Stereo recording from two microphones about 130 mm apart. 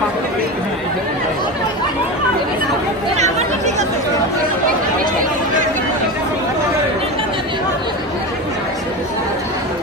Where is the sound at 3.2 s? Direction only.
60° right (ahead or behind).